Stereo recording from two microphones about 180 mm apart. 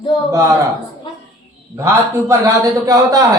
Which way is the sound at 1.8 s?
15° right (ahead or behind).